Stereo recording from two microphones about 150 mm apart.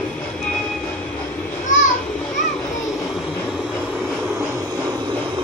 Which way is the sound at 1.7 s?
60° left (ahead or behind).